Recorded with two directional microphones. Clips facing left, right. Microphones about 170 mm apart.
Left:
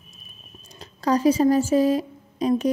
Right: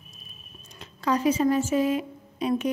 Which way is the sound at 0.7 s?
35° left (ahead or behind).